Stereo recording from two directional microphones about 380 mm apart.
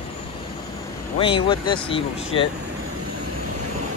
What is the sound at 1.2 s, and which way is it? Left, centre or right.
Speech, centre.